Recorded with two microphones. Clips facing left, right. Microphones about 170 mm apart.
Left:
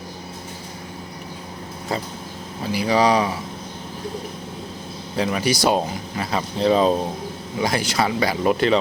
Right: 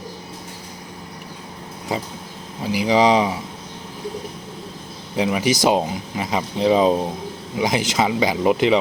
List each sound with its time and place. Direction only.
1.9 s speech: 15° right (ahead or behind)
5.1 s speech: 15° right (ahead or behind)